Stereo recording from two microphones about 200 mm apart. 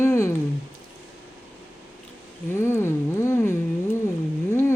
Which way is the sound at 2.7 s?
10° left (ahead or behind).